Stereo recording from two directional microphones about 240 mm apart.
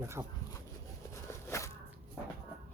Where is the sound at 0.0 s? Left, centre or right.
Centre.